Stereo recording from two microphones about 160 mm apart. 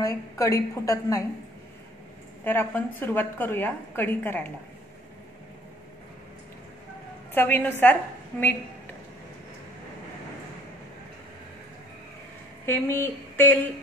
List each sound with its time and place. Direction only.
0.0 s a woman's voice: 20° left (ahead or behind)
2.4 s a woman's voice: 15° left (ahead or behind)
7.3 s a woman's voice: 10° left (ahead or behind)
12.6 s speech: 15° left (ahead or behind)